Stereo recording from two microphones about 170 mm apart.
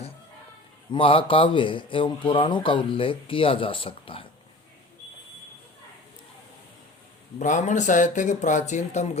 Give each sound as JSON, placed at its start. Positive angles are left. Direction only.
{"t": 0.9, "sound": "speech", "side_deg": 30}
{"t": 7.3, "sound": "speech", "side_deg": 45}